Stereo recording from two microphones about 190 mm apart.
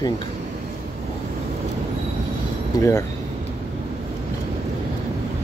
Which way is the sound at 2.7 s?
15° left (ahead or behind).